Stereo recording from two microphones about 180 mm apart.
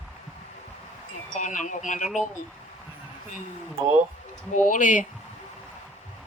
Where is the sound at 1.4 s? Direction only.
45° left (ahead or behind).